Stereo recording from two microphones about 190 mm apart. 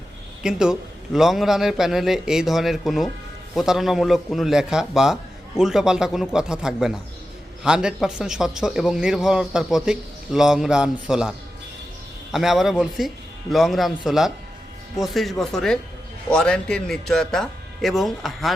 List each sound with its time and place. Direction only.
0.4 s a man's voice: 5° right (ahead or behind)